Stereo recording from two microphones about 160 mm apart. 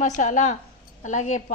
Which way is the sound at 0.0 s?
50° left (ahead or behind).